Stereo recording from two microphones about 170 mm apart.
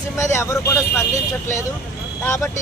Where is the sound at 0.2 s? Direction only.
15° left (ahead or behind).